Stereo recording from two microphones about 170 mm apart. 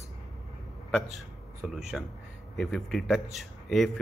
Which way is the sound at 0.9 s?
5° left (ahead or behind).